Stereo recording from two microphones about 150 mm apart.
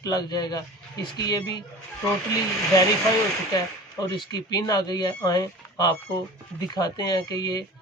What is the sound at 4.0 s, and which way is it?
Speech, 25° left (ahead or behind).